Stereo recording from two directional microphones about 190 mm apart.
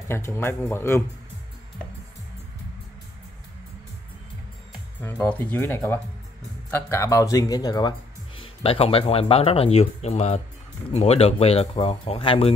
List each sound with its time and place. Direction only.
0.1 s speech: 15° left (ahead or behind)
5.0 s speech: 10° left (ahead or behind)
8.4 s speech: 30° left (ahead or behind)